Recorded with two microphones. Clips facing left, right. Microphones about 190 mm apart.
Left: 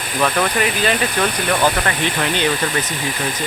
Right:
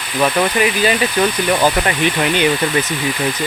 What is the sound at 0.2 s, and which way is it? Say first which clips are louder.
Speech: right 3 dB; 5° right (ahead or behind).